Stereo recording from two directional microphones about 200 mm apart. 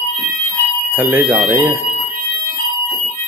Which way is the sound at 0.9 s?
10° right (ahead or behind).